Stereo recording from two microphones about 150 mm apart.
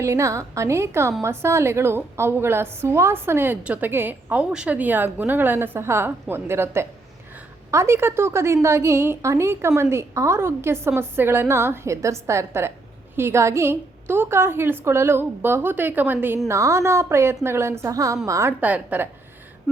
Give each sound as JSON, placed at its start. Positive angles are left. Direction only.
{"t": 0.0, "sound": "a woman's voice", "side_deg": -20}
{"t": 18.6, "sound": "a woman's voice", "side_deg": -10}